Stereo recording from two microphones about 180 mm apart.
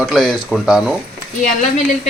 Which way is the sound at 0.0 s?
Centre (ahead or behind).